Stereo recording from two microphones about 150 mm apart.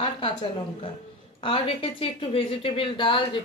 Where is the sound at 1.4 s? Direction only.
40° left (ahead or behind).